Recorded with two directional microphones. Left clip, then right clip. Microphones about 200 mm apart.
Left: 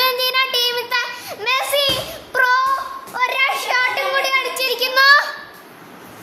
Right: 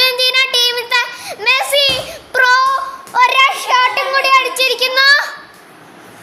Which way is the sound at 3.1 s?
20° right (ahead or behind).